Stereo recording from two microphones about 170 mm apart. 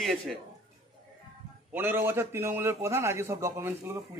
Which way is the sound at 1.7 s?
10° right (ahead or behind).